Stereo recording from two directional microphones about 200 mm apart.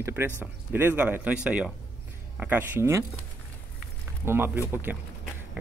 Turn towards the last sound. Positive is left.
turn(degrees=-10)  # may be behind; listen again after turning